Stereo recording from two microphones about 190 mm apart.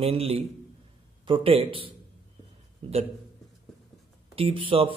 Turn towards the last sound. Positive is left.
turn(degrees=-25)  # may be behind; listen again after turning